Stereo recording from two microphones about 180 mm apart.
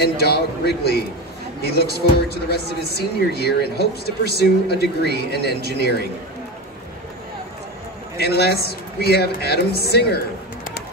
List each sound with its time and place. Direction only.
0.0 s speech: 60° left (ahead or behind)
2.5 s speech: 60° left (ahead or behind)
8.2 s speech: 65° left (ahead or behind)